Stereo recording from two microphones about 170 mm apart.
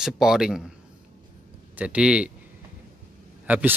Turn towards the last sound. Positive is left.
turn(degrees=-10)  # may be behind; listen again after turning